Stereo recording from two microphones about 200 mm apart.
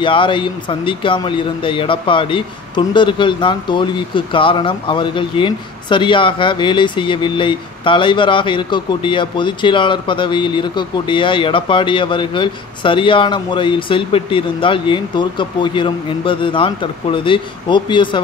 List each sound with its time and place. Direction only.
0.0 s speech: 25° left (ahead or behind)